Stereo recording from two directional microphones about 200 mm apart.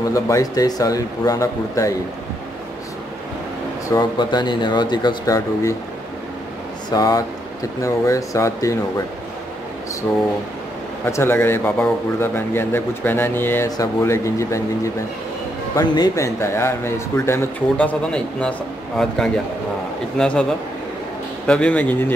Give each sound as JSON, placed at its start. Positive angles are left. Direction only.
{"t": 0.1, "sound": "a man's voice", "side_deg": 15}
{"t": 3.9, "sound": "speech", "side_deg": 20}
{"t": 6.9, "sound": "a man's voice", "side_deg": 20}
{"t": 11.1, "sound": "a man's voice", "side_deg": 15}
{"t": 21.5, "sound": "a man's voice", "side_deg": 5}